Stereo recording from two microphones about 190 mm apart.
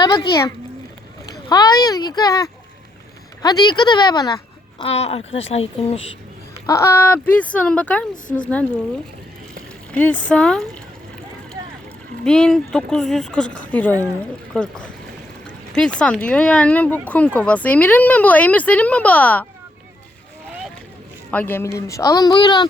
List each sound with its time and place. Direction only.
0.0 s speech: 20° left (ahead or behind)
4.8 s speech: 35° left (ahead or behind)
6.7 s speech: 15° left (ahead or behind)
9.9 s speech: 5° left (ahead or behind)
12.2 s speech: 5° left (ahead or behind)
21.2 s speech: 10° left (ahead or behind)